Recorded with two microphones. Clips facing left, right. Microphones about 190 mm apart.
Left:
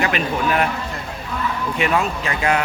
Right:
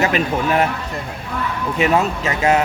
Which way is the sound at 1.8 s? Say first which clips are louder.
Right 4 dB; 25° right (ahead or behind).